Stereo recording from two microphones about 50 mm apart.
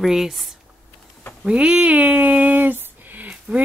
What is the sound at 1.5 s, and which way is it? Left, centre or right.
Speech, right.